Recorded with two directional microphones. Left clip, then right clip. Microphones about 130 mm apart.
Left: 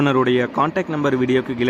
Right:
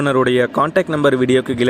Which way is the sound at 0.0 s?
45° right (ahead or behind).